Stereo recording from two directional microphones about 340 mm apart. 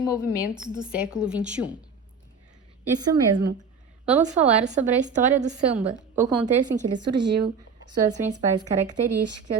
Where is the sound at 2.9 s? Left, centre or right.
Centre.